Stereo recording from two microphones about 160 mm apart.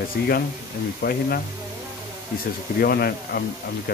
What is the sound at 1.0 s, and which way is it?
Speech, 75° left (ahead or behind).